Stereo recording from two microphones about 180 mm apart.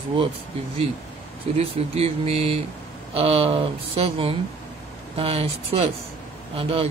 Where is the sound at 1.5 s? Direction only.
35° right (ahead or behind).